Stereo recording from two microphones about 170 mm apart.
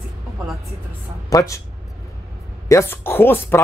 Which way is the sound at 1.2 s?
20° left (ahead or behind).